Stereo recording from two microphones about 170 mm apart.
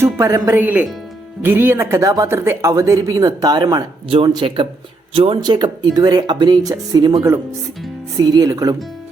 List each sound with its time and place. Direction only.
0.0 s speech: 15° right (ahead or behind)